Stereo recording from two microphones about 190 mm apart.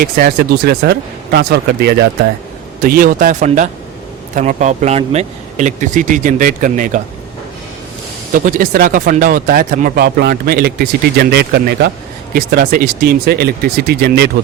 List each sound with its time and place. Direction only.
0.0 s speech: 55° right (ahead or behind)
8.3 s speech: 45° right (ahead or behind)